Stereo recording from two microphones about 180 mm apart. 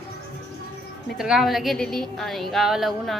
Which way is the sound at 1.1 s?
Centre (ahead or behind).